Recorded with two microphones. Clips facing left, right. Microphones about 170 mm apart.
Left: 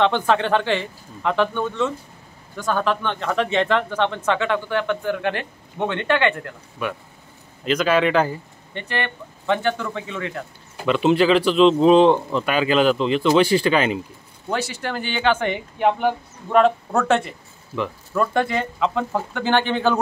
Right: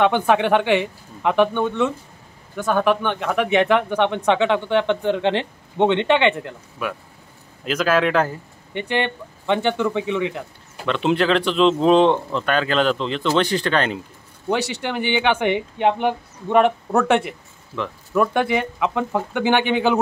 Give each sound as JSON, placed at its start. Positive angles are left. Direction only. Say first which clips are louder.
{"t": 0.0, "sound": "speech", "louder": "right 2 dB", "side_deg": -15}
{"t": 6.8, "sound": "speech", "louder": "even", "side_deg": -5}
{"t": 8.7, "sound": "speech", "louder": "right 4 dB", "side_deg": -20}
{"t": 10.9, "sound": "speech", "louder": "left 2 dB", "side_deg": 5}
{"t": 15.1, "sound": "speech", "louder": "right 1 dB", "side_deg": -15}